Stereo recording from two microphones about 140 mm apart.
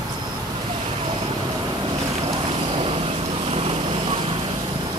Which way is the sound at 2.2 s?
40° right (ahead or behind).